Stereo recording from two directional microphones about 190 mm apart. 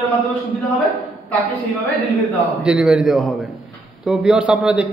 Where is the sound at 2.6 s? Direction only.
5° right (ahead or behind).